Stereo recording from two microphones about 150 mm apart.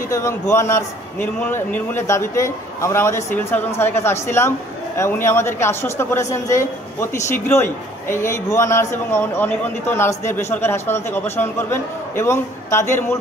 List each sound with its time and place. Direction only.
0.1 s speech: 20° left (ahead or behind)